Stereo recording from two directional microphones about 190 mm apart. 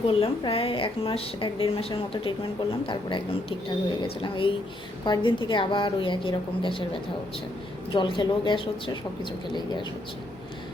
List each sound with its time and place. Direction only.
0.1 s a woman's voice: 30° left (ahead or behind)
7.9 s a woman's voice: 25° left (ahead or behind)